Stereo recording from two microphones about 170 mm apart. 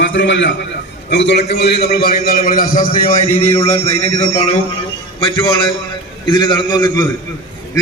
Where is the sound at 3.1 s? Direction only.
45° left (ahead or behind).